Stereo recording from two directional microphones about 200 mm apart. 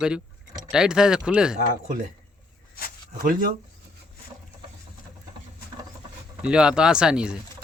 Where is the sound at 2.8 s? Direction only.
45° left (ahead or behind).